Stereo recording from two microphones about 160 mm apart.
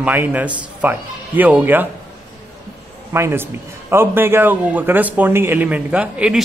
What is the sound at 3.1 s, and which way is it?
A man's voice, 15° right (ahead or behind).